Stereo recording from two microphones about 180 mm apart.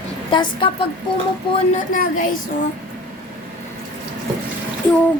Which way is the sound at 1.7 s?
45° left (ahead or behind).